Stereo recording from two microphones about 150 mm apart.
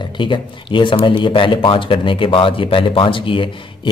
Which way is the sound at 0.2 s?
35° left (ahead or behind).